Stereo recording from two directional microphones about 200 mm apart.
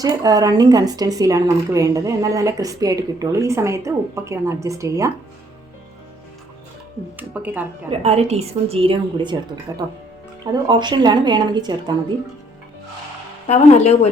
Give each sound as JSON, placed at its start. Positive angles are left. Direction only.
{"t": 0.0, "sound": "speech", "side_deg": -20}
{"t": 7.2, "sound": "speech", "side_deg": -10}
{"t": 7.9, "sound": "speech", "side_deg": -30}
{"t": 13.5, "sound": "speech", "side_deg": 35}